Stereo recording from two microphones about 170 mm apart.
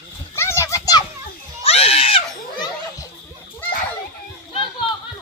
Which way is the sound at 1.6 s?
35° left (ahead or behind).